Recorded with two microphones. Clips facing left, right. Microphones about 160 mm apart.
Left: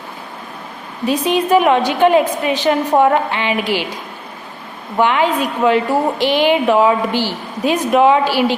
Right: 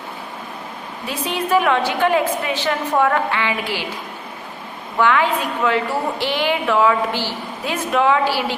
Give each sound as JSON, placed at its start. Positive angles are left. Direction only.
{"t": 1.0, "sound": "a woman's voice", "side_deg": 15}
{"t": 4.9, "sound": "a woman's voice", "side_deg": 20}